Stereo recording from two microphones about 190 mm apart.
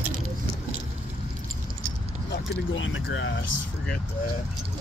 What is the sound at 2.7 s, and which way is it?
Vehicle, 90° left.